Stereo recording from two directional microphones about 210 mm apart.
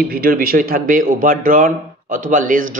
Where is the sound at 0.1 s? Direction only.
45° right (ahead or behind).